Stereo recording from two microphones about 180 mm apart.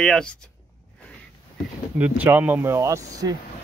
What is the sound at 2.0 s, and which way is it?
Speech, 10° right (ahead or behind).